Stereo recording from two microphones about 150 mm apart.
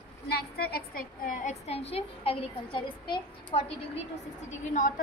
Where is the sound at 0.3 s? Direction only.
90° left; by 1.5 s 70° left (ahead or behind).